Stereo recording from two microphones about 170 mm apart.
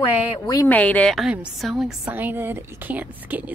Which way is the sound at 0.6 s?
10° left (ahead or behind).